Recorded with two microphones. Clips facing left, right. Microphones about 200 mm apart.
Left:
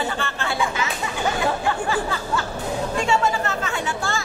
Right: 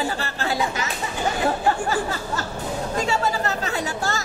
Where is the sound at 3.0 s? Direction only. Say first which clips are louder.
Left 2 dB; 40° right (ahead or behind).